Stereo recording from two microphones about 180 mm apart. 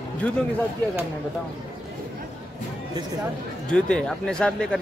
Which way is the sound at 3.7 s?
5° left (ahead or behind).